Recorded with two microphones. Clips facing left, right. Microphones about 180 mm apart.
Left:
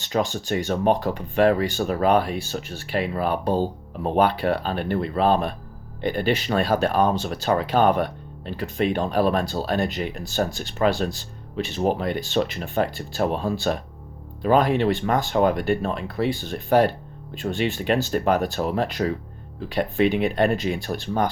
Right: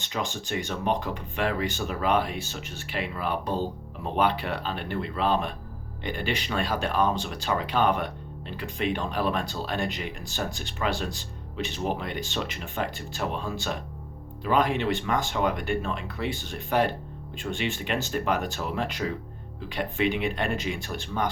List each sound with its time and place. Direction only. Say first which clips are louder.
0.0 s speech: left 8 dB; 40° left (ahead or behind)